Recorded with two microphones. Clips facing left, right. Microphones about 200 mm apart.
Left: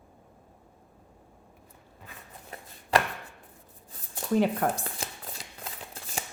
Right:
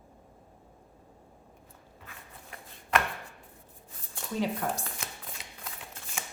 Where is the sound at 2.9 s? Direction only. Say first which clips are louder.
Left 3 dB; 35° left (ahead or behind).